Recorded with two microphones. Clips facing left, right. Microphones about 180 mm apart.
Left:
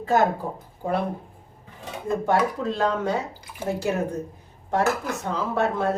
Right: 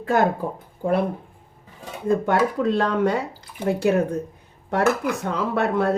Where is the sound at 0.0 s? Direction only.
55° right (ahead or behind).